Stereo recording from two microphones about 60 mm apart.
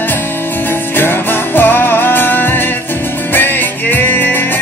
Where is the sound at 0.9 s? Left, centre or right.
Left.